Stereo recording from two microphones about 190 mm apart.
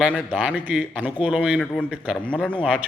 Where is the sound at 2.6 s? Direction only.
5° right (ahead or behind).